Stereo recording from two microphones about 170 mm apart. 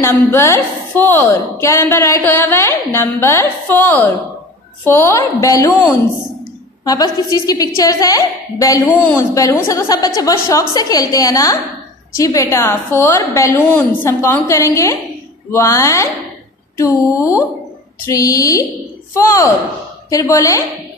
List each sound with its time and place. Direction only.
0.0 s a woman's voice: 15° left (ahead or behind)
6.8 s a woman's voice: 20° left (ahead or behind)